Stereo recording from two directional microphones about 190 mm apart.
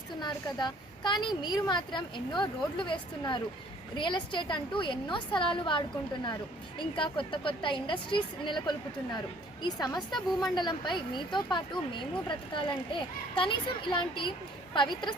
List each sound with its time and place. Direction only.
0.2 s a woman's voice: 25° left (ahead or behind)